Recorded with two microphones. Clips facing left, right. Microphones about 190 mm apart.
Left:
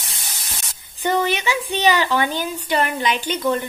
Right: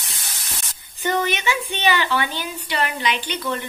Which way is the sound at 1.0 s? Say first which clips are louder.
Left 2 dB; 35° left (ahead or behind).